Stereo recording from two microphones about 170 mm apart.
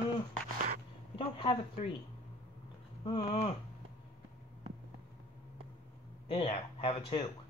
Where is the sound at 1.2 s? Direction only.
30° left (ahead or behind).